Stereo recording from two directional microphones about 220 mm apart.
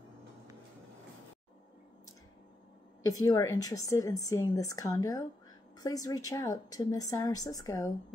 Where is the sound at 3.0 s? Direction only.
15° left (ahead or behind).